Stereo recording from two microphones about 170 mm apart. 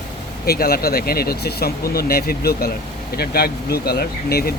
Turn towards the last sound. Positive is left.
turn(degrees=65)  # may be behind; listen again after turning